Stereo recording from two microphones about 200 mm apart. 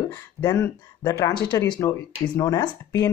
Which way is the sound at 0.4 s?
15° left (ahead or behind).